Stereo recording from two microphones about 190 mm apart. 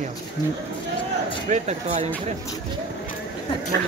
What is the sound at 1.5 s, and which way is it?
Speech, 35° right (ahead or behind).